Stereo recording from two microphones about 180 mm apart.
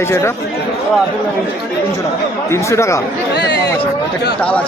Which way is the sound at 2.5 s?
15° left (ahead or behind).